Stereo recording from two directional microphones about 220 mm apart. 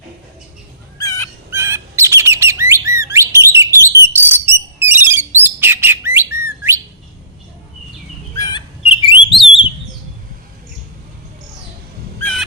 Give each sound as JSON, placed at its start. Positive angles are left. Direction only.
{"t": 0.9, "sound": "fowl", "side_deg": 15}
{"t": 1.5, "sound": "bird", "side_deg": -10}
{"t": 8.4, "sound": "bird", "side_deg": 20}
{"t": 12.2, "sound": "fowl", "side_deg": 0}